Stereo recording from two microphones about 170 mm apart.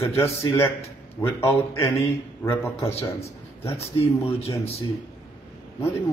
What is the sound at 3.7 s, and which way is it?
Speech, 35° left (ahead or behind).